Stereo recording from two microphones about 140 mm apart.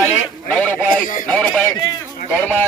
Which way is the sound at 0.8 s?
75° left (ahead or behind).